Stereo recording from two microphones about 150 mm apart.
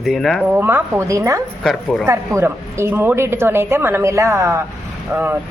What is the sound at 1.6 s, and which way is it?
Speech, centre (ahead or behind).